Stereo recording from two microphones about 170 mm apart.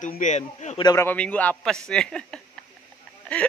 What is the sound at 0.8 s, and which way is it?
Speech, 25° left (ahead or behind).